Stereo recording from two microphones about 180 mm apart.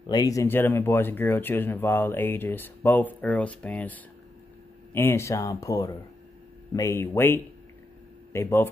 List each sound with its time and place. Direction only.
0.0 s speech: 20° left (ahead or behind)